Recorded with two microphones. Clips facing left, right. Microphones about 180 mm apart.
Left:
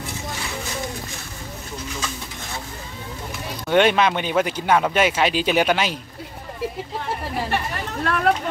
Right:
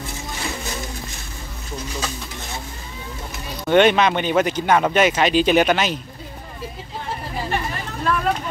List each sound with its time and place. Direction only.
3.6 s speech: 5° left (ahead or behind)
7.5 s chatter: 70° left (ahead or behind)